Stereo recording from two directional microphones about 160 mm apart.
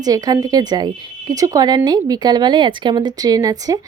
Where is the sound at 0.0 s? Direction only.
25° right (ahead or behind).